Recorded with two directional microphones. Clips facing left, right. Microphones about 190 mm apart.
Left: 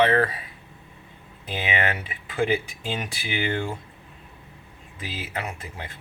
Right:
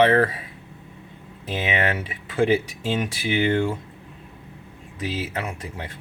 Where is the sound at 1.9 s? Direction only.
40° right (ahead or behind).